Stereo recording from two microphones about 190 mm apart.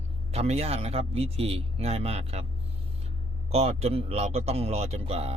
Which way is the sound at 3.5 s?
35° right (ahead or behind).